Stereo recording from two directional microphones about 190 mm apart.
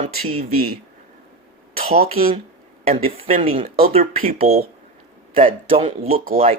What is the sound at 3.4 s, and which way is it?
Speech, 30° right (ahead or behind).